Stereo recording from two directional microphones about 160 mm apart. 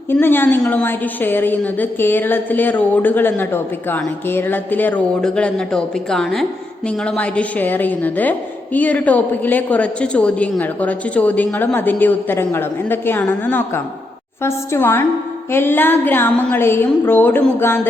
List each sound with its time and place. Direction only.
0.1 s a woman's voice: 15° left (ahead or behind)